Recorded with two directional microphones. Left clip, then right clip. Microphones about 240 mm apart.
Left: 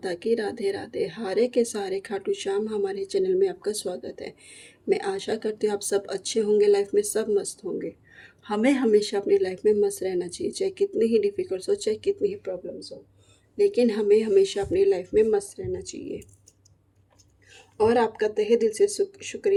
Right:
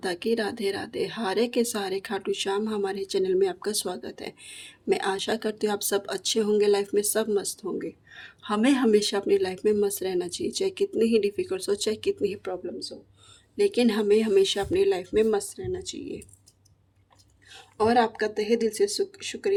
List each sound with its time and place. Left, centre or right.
0.0 s speech: right
17.5 s speech: centre